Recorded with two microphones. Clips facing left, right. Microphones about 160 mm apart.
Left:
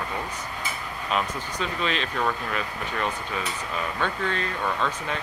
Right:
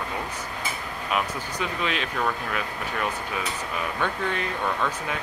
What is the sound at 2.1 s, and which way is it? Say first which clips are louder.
Speech: even; centre (ahead or behind).